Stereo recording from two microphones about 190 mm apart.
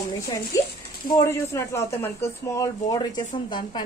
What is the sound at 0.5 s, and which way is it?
A woman's voice, 15° left (ahead or behind).